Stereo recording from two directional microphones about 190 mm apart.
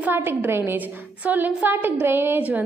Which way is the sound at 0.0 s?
10° right (ahead or behind).